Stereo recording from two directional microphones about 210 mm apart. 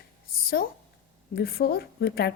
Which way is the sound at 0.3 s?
45° left (ahead or behind).